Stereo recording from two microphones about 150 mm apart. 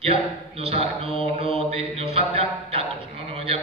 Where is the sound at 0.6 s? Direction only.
40° right (ahead or behind).